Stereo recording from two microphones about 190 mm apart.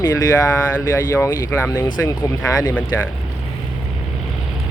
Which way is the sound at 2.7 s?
10° left (ahead or behind).